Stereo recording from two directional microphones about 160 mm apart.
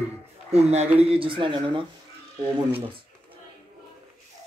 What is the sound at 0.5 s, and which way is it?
Speech, 40° right (ahead or behind).